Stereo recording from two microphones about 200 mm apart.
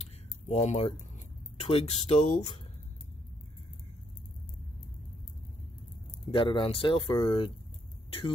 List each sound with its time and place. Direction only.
0.0 s a sound: 35° left (ahead or behind)
1.6 s speech: 30° left (ahead or behind)
6.3 s speech: 25° left (ahead or behind)